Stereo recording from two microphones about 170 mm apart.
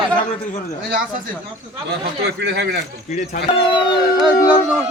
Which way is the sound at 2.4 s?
90° right.